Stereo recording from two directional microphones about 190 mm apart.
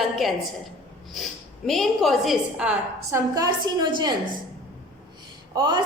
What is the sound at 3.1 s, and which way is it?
A woman's voice, 20° right (ahead or behind).